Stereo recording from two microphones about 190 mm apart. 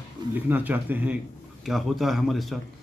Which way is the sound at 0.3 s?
10° right (ahead or behind).